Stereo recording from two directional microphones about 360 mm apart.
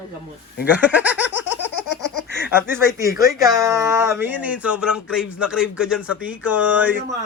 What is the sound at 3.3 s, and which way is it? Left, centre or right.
Speech, centre.